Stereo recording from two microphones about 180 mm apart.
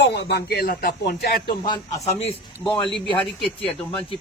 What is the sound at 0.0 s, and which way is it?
Speech, 70° left (ahead or behind).